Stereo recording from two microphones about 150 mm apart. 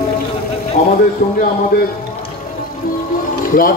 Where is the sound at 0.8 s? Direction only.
55° left (ahead or behind).